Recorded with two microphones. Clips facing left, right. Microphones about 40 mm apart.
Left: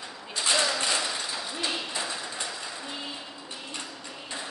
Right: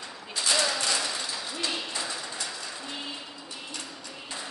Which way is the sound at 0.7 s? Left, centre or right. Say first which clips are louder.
Left 1 dB; left.